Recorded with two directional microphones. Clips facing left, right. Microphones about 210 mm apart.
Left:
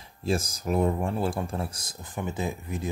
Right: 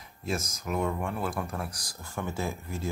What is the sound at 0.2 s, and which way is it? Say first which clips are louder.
Speech: left 5 dB; 30° left (ahead or behind).